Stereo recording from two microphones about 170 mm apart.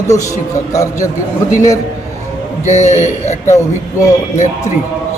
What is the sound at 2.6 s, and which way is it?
Speech, 45° left (ahead or behind).